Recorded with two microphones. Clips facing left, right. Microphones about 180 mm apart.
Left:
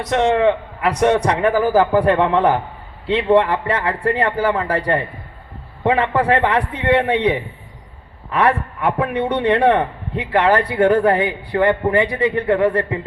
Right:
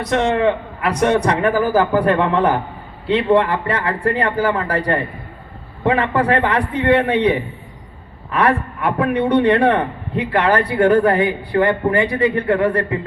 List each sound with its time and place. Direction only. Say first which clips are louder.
0.1 s a man's voice: left 1 dB; 25° left (ahead or behind)